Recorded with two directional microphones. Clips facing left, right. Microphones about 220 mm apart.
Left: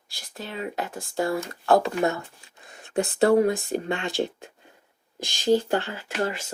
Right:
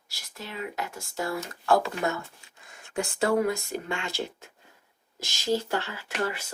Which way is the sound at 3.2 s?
35° left (ahead or behind).